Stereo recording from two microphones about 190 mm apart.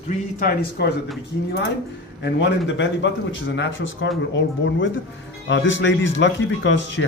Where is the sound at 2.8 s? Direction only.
80° left.